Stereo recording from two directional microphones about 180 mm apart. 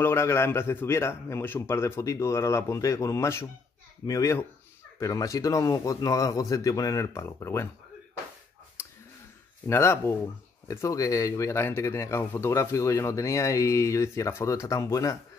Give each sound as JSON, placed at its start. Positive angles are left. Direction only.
{"t": 0.0, "sound": "a man's voice", "side_deg": 15}
{"t": 8.8, "sound": "a sound", "side_deg": 15}
{"t": 9.7, "sound": "speech", "side_deg": 15}